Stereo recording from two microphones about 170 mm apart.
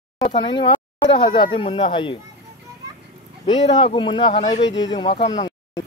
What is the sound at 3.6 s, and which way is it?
Speech, 30° left (ahead or behind).